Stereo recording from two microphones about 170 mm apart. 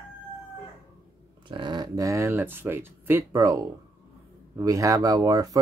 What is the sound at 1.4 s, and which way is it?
Speech, 25° right (ahead or behind).